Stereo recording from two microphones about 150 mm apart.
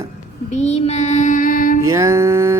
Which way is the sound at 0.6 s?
50° left (ahead or behind).